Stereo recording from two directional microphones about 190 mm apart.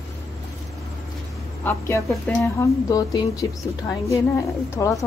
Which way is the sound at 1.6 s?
15° left (ahead or behind).